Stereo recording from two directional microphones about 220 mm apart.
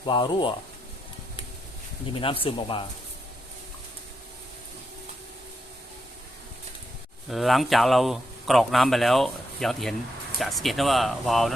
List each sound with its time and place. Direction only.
0.0 s speech: 20° left (ahead or behind)
2.2 s speech: 25° left (ahead or behind)
7.3 s speech: centre (ahead or behind)